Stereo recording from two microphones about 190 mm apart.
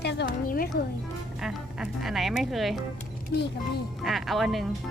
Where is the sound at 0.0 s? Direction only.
60° left (ahead or behind).